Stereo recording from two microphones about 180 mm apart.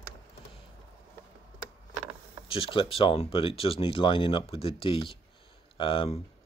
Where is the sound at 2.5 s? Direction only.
30° left (ahead or behind).